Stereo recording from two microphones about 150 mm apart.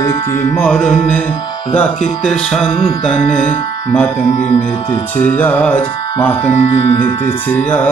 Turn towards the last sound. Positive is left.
turn(degrees=10)  # may be behind; listen again after turning